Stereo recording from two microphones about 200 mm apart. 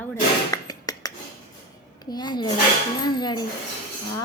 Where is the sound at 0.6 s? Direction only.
20° left (ahead or behind).